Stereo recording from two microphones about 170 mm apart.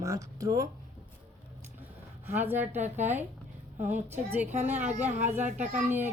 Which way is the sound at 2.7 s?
45° right (ahead or behind).